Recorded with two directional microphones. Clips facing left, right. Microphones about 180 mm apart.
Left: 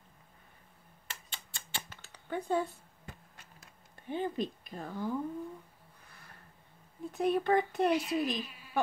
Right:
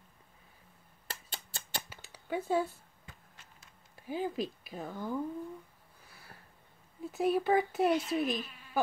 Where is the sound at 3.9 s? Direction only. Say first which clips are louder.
Even; 5° right (ahead or behind).